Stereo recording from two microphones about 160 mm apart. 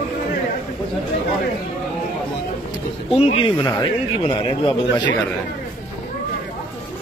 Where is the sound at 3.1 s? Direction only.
35° left (ahead or behind).